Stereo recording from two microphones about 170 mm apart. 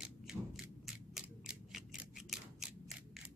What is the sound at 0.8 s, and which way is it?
Scissors, 5° right (ahead or behind).